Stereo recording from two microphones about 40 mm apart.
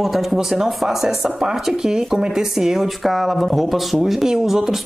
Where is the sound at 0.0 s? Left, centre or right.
Centre.